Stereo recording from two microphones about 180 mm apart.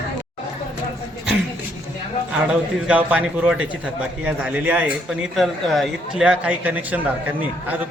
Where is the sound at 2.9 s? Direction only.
5° right (ahead or behind).